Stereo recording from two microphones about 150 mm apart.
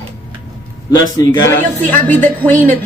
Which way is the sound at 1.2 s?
20° left (ahead or behind).